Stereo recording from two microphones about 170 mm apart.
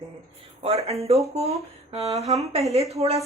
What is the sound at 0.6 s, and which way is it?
A woman's voice, 35° right (ahead or behind).